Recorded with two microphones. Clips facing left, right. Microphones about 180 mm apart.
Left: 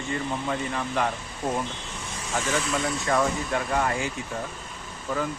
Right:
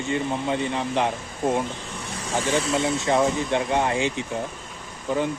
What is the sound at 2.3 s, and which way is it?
Speech, 30° right (ahead or behind).